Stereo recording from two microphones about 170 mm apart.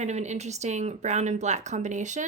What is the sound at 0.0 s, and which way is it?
Speech, 45° right (ahead or behind).